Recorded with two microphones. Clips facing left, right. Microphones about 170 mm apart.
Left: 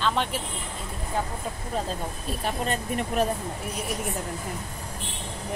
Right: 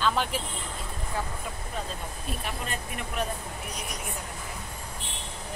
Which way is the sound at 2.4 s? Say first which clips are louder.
Left 10 dB; 35° left (ahead or behind).